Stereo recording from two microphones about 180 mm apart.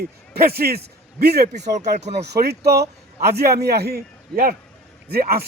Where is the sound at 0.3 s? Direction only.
60° right (ahead or behind).